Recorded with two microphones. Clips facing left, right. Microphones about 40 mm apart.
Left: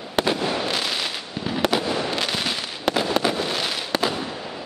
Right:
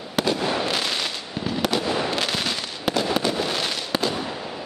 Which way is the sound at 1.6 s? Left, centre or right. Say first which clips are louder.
Left 1 dB; centre.